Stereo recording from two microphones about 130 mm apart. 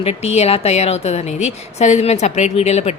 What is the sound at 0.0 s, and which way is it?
A woman's voice, 50° left (ahead or behind).